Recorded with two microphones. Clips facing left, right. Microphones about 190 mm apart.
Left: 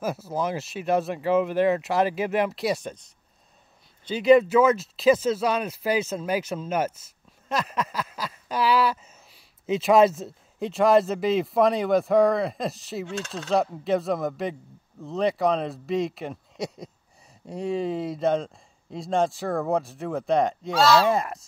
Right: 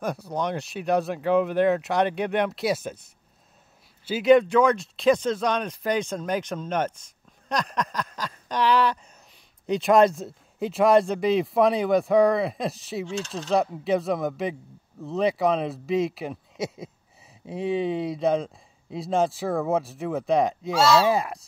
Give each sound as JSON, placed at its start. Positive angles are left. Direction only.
{"t": 0.0, "sound": "speech", "side_deg": 5}
{"t": 13.0, "sound": "speech", "side_deg": 55}
{"t": 13.3, "sound": "speech", "side_deg": 0}